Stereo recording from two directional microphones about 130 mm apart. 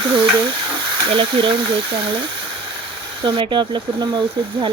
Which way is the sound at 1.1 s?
40° right (ahead or behind).